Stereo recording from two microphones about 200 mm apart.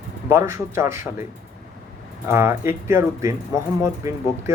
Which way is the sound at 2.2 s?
15° right (ahead or behind).